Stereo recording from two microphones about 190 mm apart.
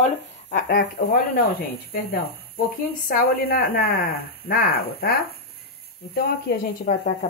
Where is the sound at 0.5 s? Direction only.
55° left (ahead or behind).